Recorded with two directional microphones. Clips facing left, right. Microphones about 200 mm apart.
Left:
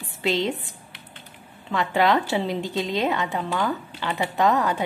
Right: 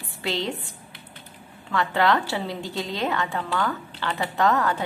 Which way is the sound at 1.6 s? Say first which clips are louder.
Left 1 dB; 20° left (ahead or behind).